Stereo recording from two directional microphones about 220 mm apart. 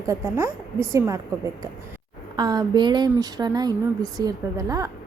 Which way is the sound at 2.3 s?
20° right (ahead or behind).